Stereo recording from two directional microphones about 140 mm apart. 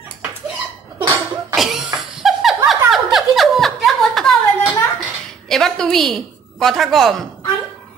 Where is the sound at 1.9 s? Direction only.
Centre (ahead or behind).